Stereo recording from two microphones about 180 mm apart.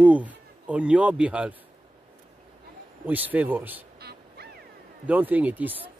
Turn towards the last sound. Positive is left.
turn(degrees=-10)  # may be behind; listen again after turning